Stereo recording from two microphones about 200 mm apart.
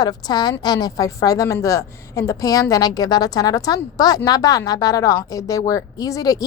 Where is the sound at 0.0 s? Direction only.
20° left (ahead or behind).